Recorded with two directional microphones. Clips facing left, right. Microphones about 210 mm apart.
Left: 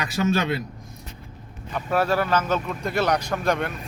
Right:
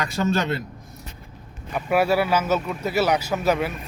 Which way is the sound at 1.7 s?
10° right (ahead or behind).